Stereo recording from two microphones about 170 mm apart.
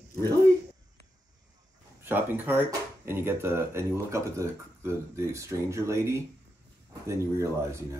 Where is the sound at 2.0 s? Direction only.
10° right (ahead or behind).